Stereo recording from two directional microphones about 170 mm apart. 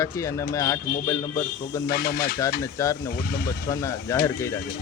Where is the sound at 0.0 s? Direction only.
20° left (ahead or behind).